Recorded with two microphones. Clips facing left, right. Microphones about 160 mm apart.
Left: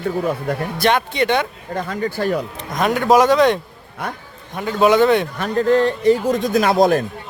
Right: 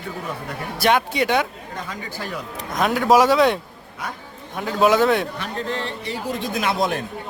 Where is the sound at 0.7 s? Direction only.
5° right (ahead or behind).